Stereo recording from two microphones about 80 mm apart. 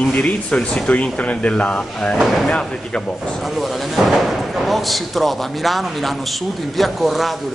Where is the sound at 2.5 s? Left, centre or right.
Centre.